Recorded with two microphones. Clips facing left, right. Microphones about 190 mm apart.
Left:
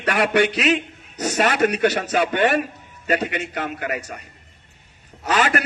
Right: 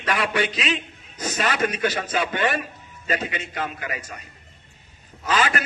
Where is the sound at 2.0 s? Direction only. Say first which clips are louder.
Left 4 dB; 45° left (ahead or behind).